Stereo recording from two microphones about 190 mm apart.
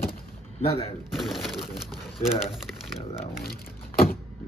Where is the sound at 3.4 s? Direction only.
50° left (ahead or behind).